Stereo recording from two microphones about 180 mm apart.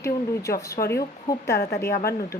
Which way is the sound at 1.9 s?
60° left (ahead or behind).